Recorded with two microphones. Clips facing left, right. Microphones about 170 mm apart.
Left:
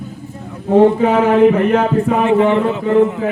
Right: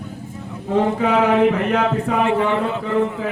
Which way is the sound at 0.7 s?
40° left (ahead or behind).